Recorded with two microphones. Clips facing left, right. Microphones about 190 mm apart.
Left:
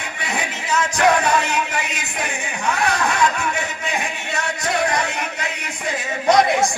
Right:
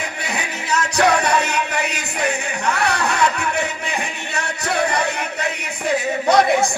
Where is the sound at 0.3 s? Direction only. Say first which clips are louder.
Left 1 dB; 70° right (ahead or behind).